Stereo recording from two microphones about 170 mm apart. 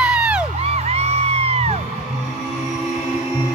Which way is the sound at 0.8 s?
40° right (ahead or behind).